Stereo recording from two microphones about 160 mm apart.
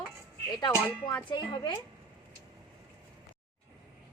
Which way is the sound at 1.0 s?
30° left (ahead or behind).